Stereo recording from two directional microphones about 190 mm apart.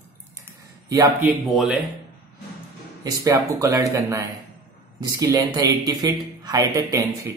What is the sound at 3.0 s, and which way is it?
A man's voice, 20° right (ahead or behind).